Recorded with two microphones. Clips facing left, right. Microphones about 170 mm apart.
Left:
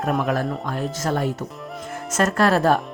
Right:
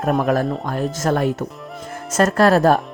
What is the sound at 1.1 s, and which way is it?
Speech, 60° right (ahead or behind).